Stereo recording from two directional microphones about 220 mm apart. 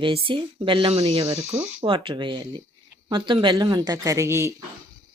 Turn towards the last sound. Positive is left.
turn(degrees=-15)  # may be behind; listen again after turning